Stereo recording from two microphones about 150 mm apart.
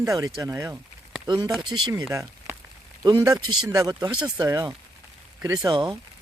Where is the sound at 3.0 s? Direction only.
25° right (ahead or behind).